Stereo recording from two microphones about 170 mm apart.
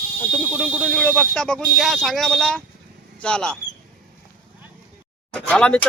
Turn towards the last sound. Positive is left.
turn(degrees=5)  # may be behind; listen again after turning